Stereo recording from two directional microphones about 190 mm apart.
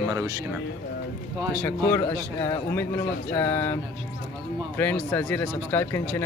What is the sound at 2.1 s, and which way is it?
Speech, 10° left (ahead or behind).